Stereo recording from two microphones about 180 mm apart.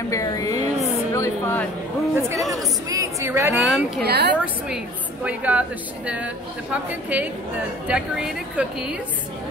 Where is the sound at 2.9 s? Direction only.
15° right (ahead or behind).